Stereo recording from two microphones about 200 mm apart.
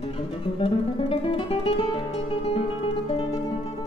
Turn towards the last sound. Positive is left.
turn(degrees=30)  # may be behind; listen again after turning